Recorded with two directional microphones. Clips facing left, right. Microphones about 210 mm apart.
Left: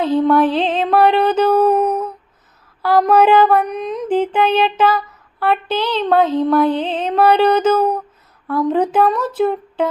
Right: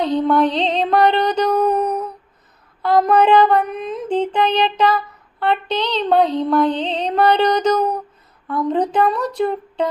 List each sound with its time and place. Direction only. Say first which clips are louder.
0.0 s music: left 2 dB; 5° left (ahead or behind)